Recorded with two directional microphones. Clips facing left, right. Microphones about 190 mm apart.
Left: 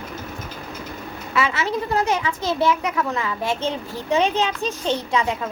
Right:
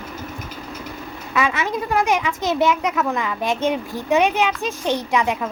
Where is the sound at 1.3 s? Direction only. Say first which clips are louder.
Right 1 dB; 15° right (ahead or behind).